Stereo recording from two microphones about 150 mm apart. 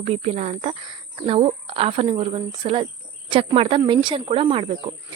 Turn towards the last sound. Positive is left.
turn(degrees=-35)  # may be behind; listen again after turning